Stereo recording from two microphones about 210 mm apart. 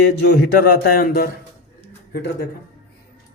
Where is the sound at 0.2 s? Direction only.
45° left (ahead or behind).